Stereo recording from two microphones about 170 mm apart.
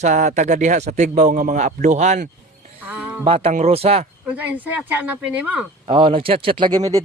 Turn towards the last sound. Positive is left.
turn(degrees=-20)  # may be behind; listen again after turning